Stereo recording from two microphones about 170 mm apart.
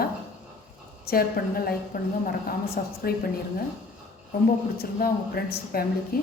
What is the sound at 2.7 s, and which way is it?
Speech, 65° left (ahead or behind).